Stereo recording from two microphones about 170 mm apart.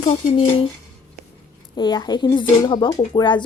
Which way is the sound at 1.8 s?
25° left (ahead or behind).